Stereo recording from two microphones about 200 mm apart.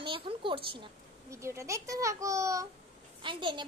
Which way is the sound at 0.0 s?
25° right (ahead or behind).